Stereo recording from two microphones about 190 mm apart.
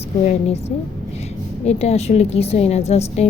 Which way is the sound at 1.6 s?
35° left (ahead or behind).